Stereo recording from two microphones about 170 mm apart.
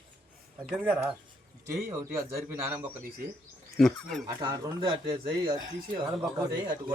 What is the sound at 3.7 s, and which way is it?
Speech, centre (ahead or behind).